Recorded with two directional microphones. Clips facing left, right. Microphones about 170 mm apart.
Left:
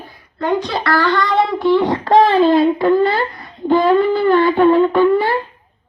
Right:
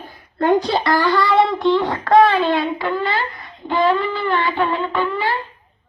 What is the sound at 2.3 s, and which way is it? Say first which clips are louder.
Speech: left 7 dB; 40° left (ahead or behind).